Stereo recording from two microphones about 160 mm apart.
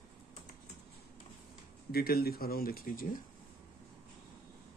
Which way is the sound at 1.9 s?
75° left (ahead or behind).